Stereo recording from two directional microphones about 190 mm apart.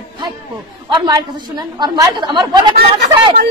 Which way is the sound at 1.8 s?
25° right (ahead or behind).